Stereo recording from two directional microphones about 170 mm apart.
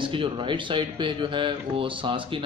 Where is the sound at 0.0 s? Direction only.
30° right (ahead or behind).